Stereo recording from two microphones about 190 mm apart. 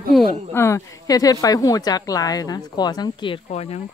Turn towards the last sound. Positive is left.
turn(degrees=30)  # may be behind; listen again after turning